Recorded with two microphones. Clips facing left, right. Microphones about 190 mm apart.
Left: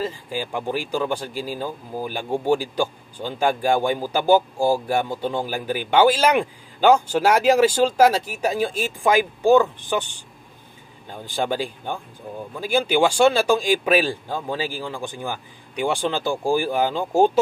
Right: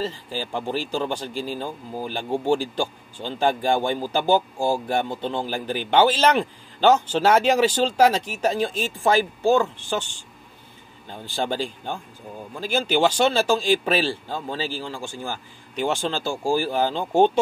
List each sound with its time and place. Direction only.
0.0 s speech: 10° left (ahead or behind)